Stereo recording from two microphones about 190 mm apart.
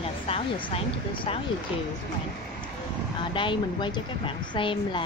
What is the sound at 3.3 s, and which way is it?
Speech, 25° left (ahead or behind).